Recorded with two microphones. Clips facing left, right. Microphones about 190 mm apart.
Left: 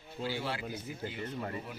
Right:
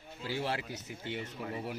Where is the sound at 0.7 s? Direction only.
75° right (ahead or behind).